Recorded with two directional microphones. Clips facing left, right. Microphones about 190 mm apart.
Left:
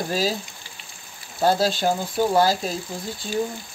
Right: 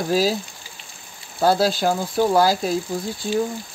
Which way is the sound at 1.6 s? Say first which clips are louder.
Right 2 dB; 5° right (ahead or behind).